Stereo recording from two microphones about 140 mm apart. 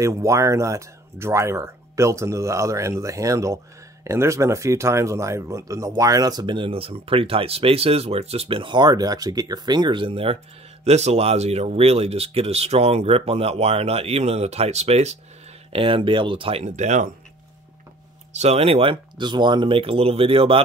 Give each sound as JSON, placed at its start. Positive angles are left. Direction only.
{"t": 0.0, "sound": "speech", "side_deg": -20}
{"t": 15.7, "sound": "speech", "side_deg": -40}
{"t": 16.6, "sound": "speech", "side_deg": -55}
{"t": 18.3, "sound": "speech", "side_deg": -50}